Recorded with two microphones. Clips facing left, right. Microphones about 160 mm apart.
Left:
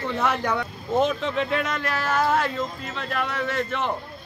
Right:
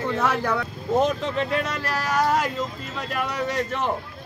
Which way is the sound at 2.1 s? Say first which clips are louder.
Even; 10° right (ahead or behind).